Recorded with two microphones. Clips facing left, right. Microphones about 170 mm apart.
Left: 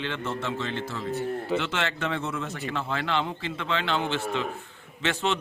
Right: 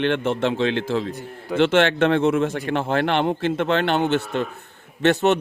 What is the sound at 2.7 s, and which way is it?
A man's voice, 65° right (ahead or behind).